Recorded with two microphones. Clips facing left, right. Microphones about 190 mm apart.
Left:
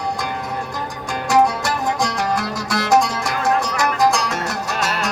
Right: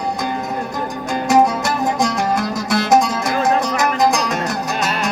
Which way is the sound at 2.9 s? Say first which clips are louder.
Right 1 dB; 20° right (ahead or behind).